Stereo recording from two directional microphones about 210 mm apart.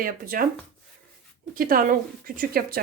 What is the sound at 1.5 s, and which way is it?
A woman's voice, 45° right (ahead or behind).